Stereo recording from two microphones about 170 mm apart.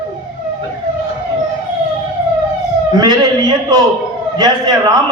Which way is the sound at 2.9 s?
25° right (ahead or behind).